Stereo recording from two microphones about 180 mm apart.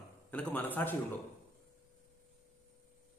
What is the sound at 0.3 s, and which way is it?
Speech, 10° left (ahead or behind).